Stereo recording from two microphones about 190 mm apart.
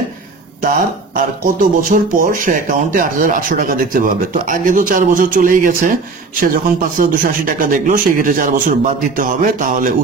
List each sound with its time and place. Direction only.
0.6 s speech: 45° right (ahead or behind)